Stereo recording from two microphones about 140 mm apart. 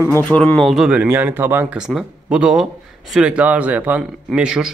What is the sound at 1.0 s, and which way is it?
A man's voice, 15° right (ahead or behind).